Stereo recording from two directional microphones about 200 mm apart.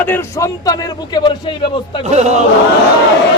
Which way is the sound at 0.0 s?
10° left (ahead or behind).